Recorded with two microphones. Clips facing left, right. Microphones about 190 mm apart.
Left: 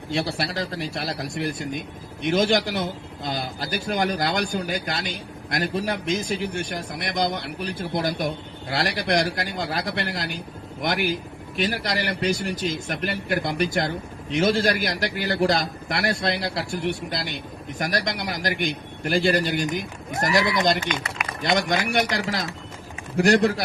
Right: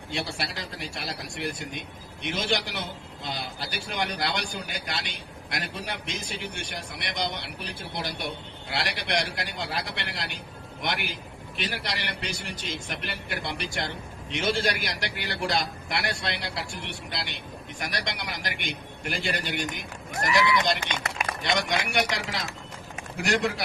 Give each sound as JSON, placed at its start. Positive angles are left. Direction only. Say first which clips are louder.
{"t": 0.3, "sound": "a man's voice", "louder": "left 7 dB", "side_deg": 35}